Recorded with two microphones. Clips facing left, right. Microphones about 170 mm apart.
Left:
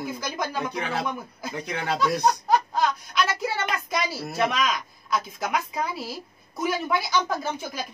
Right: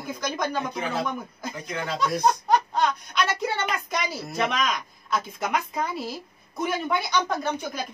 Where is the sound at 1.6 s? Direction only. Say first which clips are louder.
Left 2 dB; 65° left (ahead or behind).